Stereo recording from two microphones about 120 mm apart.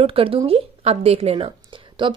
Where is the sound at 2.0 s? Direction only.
40° right (ahead or behind).